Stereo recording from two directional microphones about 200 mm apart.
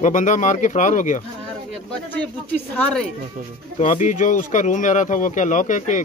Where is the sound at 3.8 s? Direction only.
40° left (ahead or behind).